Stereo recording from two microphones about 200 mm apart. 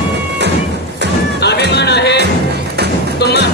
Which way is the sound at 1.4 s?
55° left (ahead or behind).